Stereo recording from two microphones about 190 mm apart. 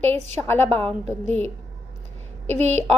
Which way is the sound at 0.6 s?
30° right (ahead or behind).